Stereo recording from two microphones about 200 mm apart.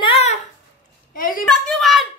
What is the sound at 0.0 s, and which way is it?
Babbling, 30° left (ahead or behind).